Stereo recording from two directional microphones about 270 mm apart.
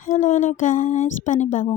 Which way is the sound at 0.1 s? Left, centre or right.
Left.